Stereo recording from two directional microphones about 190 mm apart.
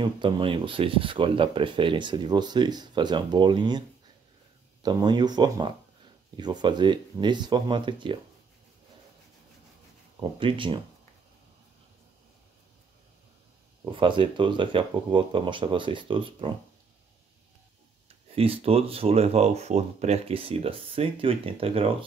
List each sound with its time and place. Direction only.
0.0 s speech: 25° right (ahead or behind)
4.8 s speech: 20° right (ahead or behind)
10.4 s speech: 25° right (ahead or behind)
13.8 s speech: 25° right (ahead or behind)
18.3 s speech: 30° right (ahead or behind)